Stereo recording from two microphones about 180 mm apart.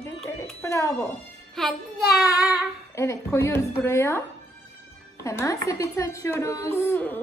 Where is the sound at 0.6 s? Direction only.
15° left (ahead or behind).